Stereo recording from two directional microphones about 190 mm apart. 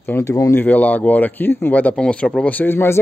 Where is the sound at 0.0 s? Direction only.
15° left (ahead or behind).